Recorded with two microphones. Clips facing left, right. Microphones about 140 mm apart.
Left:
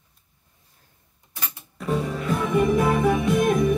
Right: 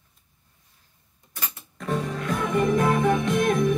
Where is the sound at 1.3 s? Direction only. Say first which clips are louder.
Left 1 dB; 15° left (ahead or behind).